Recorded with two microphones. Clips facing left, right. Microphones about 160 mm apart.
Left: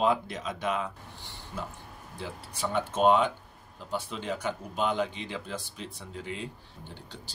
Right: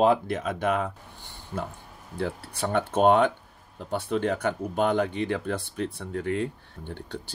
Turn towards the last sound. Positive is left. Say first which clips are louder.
# right 9 dB
turn(degrees=-55)  # may be behind; listen again after turning